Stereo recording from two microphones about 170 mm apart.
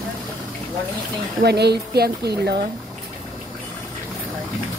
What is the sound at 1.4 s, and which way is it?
Speech, 75° right (ahead or behind).